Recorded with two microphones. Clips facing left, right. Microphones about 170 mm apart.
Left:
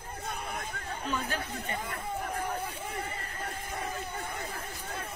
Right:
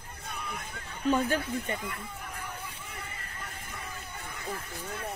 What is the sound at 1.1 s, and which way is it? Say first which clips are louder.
Speech: right 6 dB; 50° right (ahead or behind).